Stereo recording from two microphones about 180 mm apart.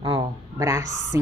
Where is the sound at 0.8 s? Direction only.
40° left (ahead or behind).